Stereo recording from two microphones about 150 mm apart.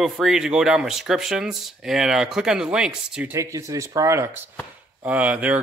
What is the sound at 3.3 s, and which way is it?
Speech, 20° right (ahead or behind).